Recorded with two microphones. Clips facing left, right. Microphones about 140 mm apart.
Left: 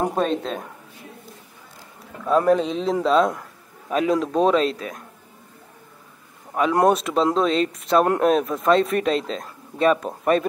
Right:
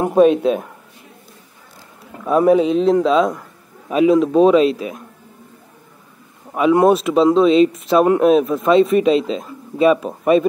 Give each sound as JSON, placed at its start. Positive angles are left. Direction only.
{"t": 0.0, "sound": "speech", "side_deg": -10}
{"t": 2.2, "sound": "speech", "side_deg": -10}
{"t": 6.5, "sound": "speech", "side_deg": -5}